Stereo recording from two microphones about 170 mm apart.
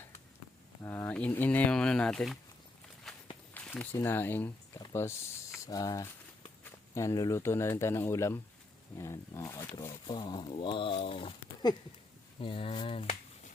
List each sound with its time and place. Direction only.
0.8 s speech: 15° left (ahead or behind)
3.5 s a sound: 5° left (ahead or behind)
3.9 s speech: 15° left (ahead or behind)
10.1 s speech: 25° left (ahead or behind)